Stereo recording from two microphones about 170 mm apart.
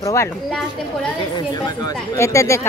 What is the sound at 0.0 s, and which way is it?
Speech, 20° left (ahead or behind).